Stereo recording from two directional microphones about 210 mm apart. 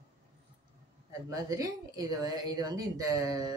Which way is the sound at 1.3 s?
15° right (ahead or behind).